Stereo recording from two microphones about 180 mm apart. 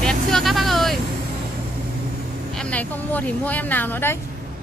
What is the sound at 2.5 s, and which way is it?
Speech, 5° left (ahead or behind).